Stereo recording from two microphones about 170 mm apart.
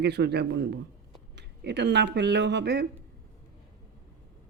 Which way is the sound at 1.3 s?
90° right.